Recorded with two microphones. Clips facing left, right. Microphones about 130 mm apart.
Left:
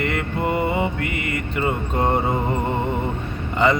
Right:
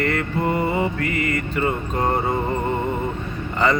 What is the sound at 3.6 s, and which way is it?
Mantra, 20° left (ahead or behind).